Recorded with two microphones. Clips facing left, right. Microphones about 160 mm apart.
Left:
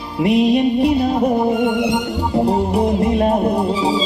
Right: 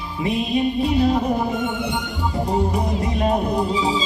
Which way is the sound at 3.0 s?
50° left (ahead or behind).